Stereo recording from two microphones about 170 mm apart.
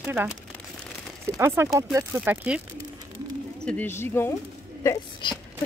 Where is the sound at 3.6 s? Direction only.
10° left (ahead or behind).